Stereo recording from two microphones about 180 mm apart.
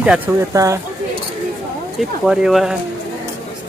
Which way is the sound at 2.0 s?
Centre (ahead or behind).